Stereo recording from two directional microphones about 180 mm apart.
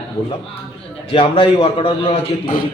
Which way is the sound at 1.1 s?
30° left (ahead or behind).